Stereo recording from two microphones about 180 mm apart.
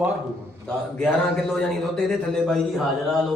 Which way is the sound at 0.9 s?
Centre (ahead or behind).